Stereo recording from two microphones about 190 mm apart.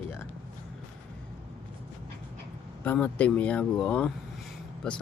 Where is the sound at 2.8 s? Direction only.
10° left (ahead or behind).